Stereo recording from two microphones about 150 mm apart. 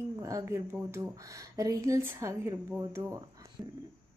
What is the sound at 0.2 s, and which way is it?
Speech, 20° right (ahead or behind).